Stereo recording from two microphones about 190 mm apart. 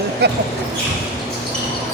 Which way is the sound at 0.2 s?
65° right (ahead or behind).